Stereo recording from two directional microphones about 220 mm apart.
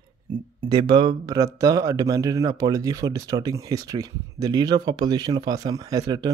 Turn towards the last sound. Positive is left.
turn(degrees=-15)  # may be behind; listen again after turning